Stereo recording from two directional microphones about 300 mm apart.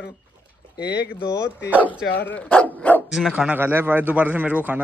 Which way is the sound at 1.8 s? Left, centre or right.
Centre.